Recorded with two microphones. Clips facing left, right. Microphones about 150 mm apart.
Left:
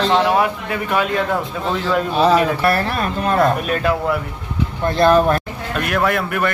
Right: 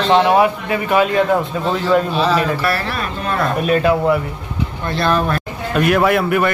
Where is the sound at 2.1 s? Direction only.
50° left (ahead or behind).